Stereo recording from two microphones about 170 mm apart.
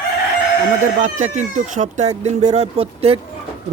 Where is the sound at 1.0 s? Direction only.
45° right (ahead or behind).